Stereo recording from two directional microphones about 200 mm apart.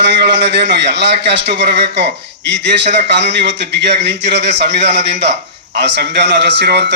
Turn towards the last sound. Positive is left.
turn(degrees=-55)  # may be behind; listen again after turning